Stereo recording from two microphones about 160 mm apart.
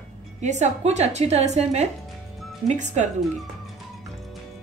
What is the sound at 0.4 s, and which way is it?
A woman's voice, 45° right (ahead or behind).